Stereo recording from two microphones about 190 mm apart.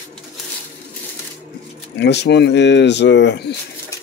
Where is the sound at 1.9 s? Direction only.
65° left (ahead or behind).